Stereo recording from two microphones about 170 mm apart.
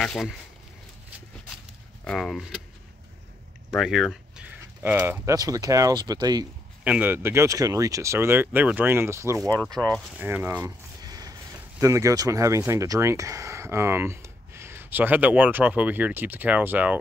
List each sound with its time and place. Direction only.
0.0 s speech: centre (ahead or behind)
2.0 s speech: centre (ahead or behind)
3.7 s speech: centre (ahead or behind); by 6.4 s 25° right (ahead or behind)
6.8 s speech: 10° right (ahead or behind)
11.0 s a sound: 20° right (ahead or behind)
11.8 s speech: 20° right (ahead or behind)